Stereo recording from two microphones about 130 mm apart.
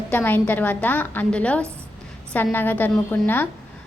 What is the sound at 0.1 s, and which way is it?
A woman's voice, 15° left (ahead or behind).